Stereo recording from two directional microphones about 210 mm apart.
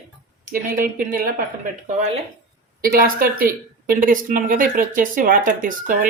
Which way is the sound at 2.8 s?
45° right (ahead or behind).